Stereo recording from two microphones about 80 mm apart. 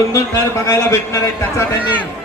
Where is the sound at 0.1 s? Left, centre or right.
Left.